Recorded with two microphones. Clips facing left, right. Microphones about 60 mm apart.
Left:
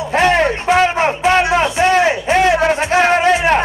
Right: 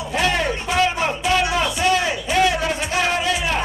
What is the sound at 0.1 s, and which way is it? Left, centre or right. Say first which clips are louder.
Music: left 8 dB; left.